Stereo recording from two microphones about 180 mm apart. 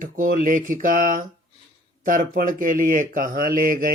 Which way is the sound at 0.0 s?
50° right (ahead or behind).